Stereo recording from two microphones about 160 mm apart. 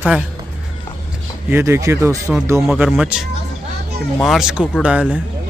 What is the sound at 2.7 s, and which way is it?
Speech, 5° right (ahead or behind).